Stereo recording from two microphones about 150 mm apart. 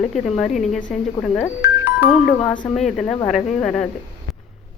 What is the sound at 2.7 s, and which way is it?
A woman's voice, centre (ahead or behind).